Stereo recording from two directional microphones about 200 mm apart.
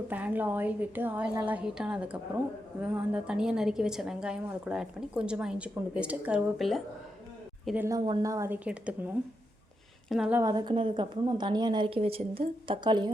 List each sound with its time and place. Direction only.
0.1 s a woman's voice: 10° right (ahead or behind)
7.9 s speech: 20° right (ahead or behind)
10.1 s a woman's voice: 5° right (ahead or behind)
10.4 s a woman's voice: 20° right (ahead or behind)